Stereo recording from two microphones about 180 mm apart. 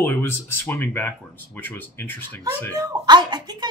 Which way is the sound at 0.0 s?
15° left (ahead or behind).